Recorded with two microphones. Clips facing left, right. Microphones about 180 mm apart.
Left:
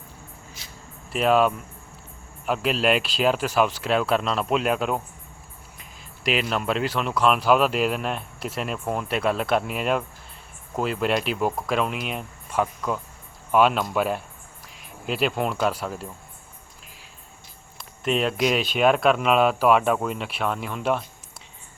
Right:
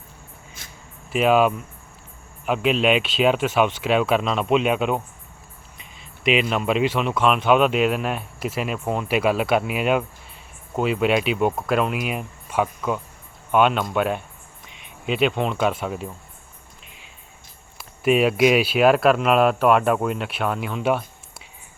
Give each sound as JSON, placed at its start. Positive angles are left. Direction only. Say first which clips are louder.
{"t": 0.6, "sound": "a sound", "louder": "right 1 dB", "side_deg": -50}
{"t": 1.1, "sound": "speech", "louder": "right 2 dB", "side_deg": 0}
{"t": 17.7, "sound": "speech", "louder": "right 6 dB", "side_deg": -10}